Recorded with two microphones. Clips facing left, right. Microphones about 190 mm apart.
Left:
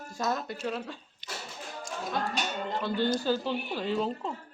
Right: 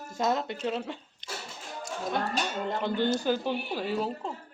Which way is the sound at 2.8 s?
15° right (ahead or behind).